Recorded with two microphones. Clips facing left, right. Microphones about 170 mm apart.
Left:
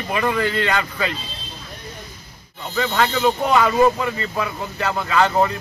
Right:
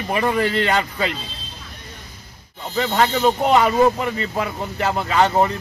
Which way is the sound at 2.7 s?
25° right (ahead or behind).